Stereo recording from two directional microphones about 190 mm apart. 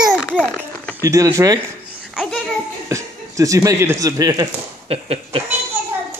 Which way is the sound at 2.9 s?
15° right (ahead or behind).